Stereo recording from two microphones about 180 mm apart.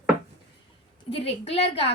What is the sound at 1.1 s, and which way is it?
Speech, 35° left (ahead or behind).